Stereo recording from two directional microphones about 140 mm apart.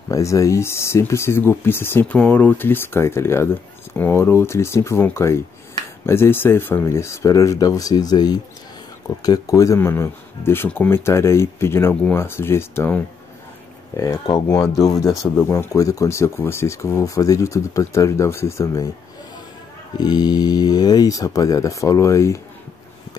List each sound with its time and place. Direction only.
0.1 s speech: 20° left (ahead or behind)
14.8 s speech: 25° left (ahead or behind)
20.0 s speech: 30° left (ahead or behind)